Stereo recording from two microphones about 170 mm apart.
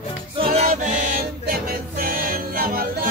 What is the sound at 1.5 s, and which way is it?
Music, 60° right (ahead or behind).